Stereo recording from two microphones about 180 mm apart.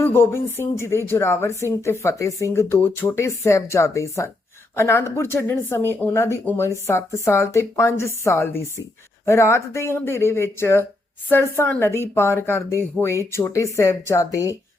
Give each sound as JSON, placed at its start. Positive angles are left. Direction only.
{"t": 0.0, "sound": "speech", "side_deg": 15}